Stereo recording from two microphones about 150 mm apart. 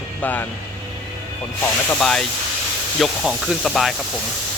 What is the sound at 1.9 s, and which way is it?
Speech, 5° left (ahead or behind).